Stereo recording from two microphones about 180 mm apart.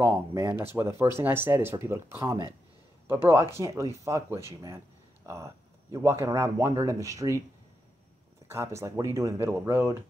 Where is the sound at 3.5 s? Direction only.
15° right (ahead or behind).